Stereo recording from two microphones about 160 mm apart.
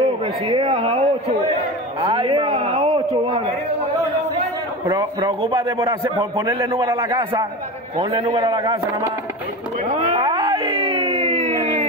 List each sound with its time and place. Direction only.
0.0 s a man's voice: 35° right (ahead or behind)
4.8 s a man's voice: 30° right (ahead or behind)
5.9 s a man's voice: 20° right (ahead or behind); by 8.5 s 35° right (ahead or behind)
8.5 s a man's voice: 25° right (ahead or behind)
9.8 s a sound: 35° right (ahead or behind)